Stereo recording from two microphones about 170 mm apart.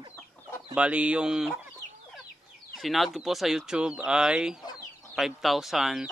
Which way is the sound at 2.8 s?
Centre (ahead or behind).